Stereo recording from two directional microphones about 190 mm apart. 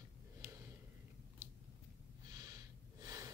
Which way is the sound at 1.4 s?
15° right (ahead or behind).